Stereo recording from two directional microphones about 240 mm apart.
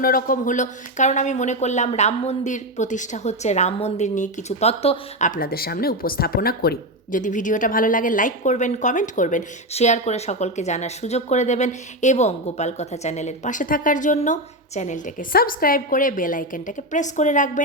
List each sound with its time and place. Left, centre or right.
0.0 s speech: left